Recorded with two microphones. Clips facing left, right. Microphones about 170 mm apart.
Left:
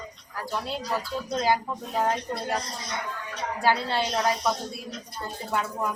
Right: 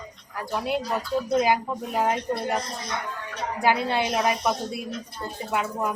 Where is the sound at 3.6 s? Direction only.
15° right (ahead or behind).